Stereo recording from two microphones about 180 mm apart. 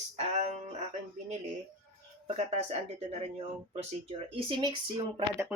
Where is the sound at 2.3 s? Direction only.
35° right (ahead or behind).